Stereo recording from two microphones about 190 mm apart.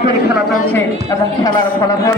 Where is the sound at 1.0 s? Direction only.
20° left (ahead or behind).